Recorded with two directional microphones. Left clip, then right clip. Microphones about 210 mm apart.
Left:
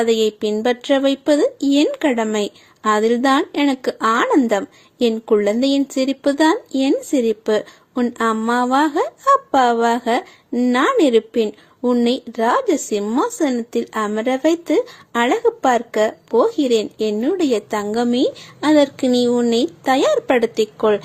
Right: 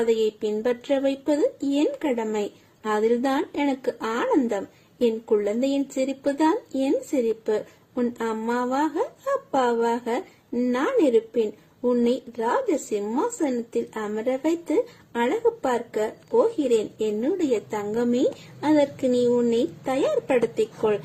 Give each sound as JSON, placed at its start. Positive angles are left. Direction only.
{"t": 0.0, "sound": "speech", "side_deg": 15}